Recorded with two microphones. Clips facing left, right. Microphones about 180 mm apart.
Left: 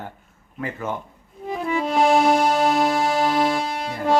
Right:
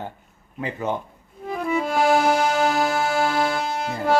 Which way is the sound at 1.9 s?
5° right (ahead or behind).